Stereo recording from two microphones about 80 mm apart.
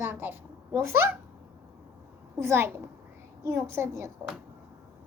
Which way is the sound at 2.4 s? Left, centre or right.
Right.